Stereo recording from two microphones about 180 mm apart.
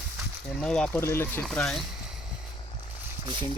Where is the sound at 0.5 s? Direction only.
5° left (ahead or behind).